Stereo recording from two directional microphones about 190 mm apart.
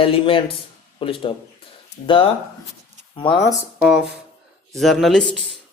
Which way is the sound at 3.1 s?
25° left (ahead or behind).